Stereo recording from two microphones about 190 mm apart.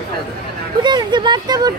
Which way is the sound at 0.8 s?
25° right (ahead or behind).